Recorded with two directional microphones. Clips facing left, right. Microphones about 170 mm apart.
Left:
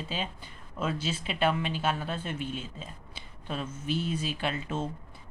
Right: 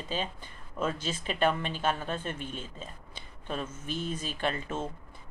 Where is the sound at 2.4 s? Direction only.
50° right (ahead or behind).